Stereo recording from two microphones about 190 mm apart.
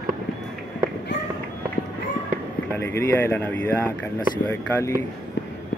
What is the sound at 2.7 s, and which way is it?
Speech, 10° left (ahead or behind).